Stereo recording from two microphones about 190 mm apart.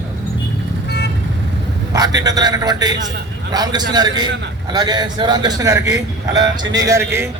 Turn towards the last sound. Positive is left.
turn(degrees=-15)  # may be behind; listen again after turning